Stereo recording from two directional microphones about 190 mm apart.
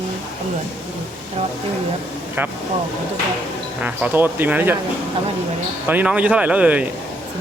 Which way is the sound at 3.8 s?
10° right (ahead or behind).